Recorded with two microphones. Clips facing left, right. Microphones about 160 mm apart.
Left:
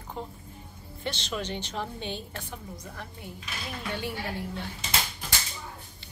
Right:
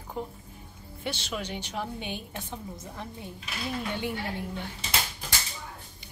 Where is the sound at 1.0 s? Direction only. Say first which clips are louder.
Left 1 dB; 10° right (ahead or behind).